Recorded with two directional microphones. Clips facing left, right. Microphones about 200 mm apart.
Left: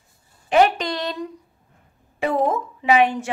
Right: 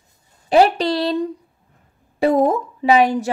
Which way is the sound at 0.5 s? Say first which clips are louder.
Right 3 dB; 35° right (ahead or behind).